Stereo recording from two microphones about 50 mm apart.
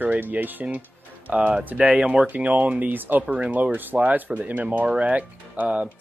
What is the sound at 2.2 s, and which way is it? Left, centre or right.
Speech, right.